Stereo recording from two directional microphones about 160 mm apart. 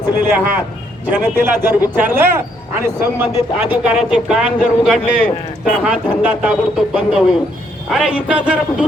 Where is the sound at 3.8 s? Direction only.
5° right (ahead or behind).